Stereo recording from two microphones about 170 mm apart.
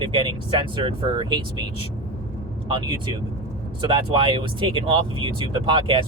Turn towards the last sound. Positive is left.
turn(degrees=-30)  # may be behind; listen again after turning